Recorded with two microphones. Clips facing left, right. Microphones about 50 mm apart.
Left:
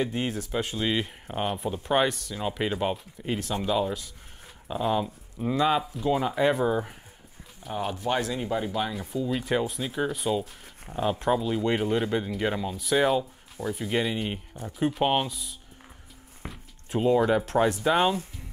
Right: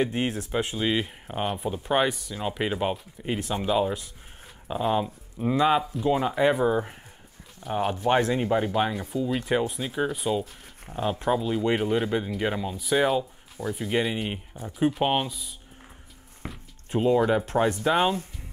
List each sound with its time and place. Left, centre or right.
0.0 s speech: right
0.5 s speech: centre
0.7 s speech: centre
3.3 s speech: centre
7.6 s speech: centre
8.1 s speech: right
8.9 s speech: centre